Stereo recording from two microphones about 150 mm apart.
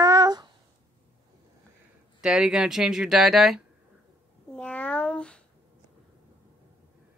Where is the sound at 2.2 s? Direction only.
5° right (ahead or behind).